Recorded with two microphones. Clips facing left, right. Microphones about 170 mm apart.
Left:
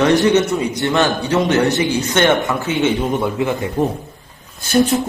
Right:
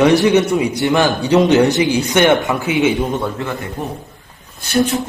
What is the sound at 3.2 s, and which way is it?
Speech, 15° left (ahead or behind).